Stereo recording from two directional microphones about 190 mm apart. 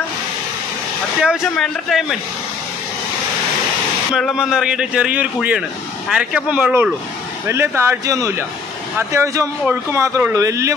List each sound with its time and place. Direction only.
1.2 s speech: centre (ahead or behind)
4.1 s speech: centre (ahead or behind)